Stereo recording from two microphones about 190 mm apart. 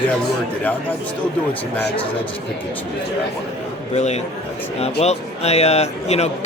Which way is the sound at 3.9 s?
35° left (ahead or behind).